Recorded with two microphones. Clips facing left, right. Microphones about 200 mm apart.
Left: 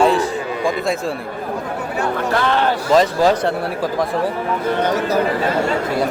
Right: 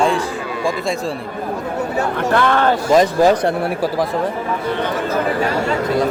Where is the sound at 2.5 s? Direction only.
50° right (ahead or behind).